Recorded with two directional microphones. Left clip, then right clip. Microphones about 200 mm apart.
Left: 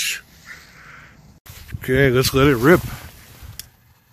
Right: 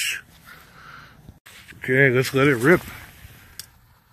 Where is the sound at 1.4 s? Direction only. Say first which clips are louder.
Left 2 dB; 20° left (ahead or behind).